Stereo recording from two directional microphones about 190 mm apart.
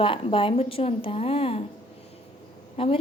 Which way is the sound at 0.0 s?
25° left (ahead or behind).